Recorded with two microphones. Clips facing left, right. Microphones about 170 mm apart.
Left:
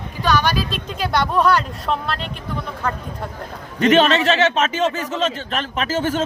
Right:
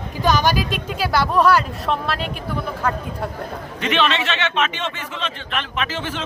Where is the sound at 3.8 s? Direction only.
45° left (ahead or behind).